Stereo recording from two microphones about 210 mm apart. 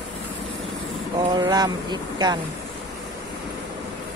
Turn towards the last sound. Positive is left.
turn(degrees=-20)  # may be behind; listen again after turning